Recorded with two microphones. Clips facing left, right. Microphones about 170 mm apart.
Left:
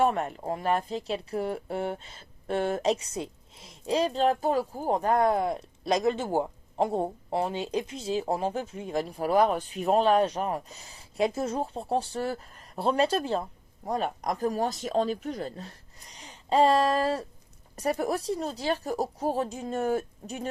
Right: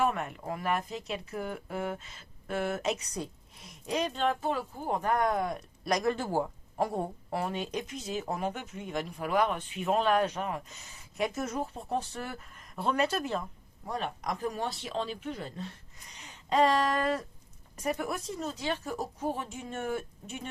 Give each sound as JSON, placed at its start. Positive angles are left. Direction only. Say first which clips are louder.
{"t": 0.0, "sound": "speech", "louder": "left 4 dB", "side_deg": 35}